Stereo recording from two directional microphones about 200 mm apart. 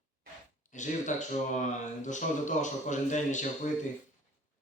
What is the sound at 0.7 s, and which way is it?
A man's voice, 40° left (ahead or behind).